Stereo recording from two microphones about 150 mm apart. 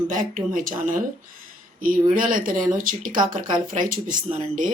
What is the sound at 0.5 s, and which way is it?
Speech, 60° right (ahead or behind).